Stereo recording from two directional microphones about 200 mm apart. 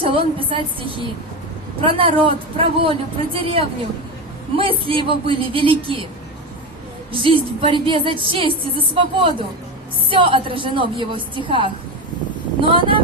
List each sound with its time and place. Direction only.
0.0 s a woman's voice: 25° right (ahead or behind)
7.1 s a woman's voice: 25° right (ahead or behind)